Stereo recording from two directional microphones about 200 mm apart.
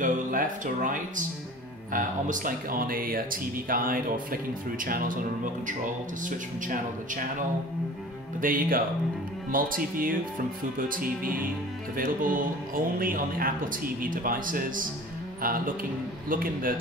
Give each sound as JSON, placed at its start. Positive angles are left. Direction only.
{"t": 0.0, "sound": "speech", "side_deg": -40}